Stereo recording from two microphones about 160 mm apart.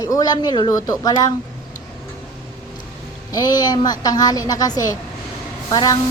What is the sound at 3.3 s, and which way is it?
Speech, 25° left (ahead or behind).